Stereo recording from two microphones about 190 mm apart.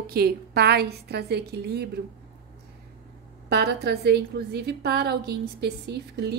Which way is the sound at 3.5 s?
60° right (ahead or behind).